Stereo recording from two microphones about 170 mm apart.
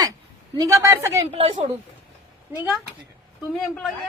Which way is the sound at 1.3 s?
30° right (ahead or behind).